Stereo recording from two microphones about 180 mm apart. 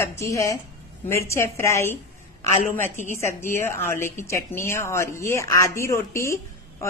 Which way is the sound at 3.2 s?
15° left (ahead or behind).